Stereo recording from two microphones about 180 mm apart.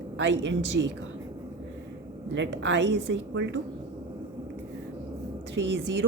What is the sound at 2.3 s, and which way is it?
A woman's voice, 90° right.